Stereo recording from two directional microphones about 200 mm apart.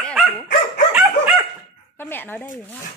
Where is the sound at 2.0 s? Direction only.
10° left (ahead or behind).